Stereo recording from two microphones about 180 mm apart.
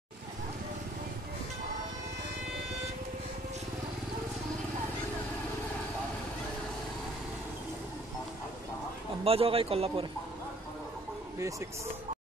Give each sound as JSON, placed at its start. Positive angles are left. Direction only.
{"t": 9.2, "sound": "a man's voice", "side_deg": -30}